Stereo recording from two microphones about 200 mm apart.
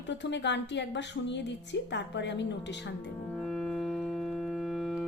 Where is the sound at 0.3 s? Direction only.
60° left (ahead or behind).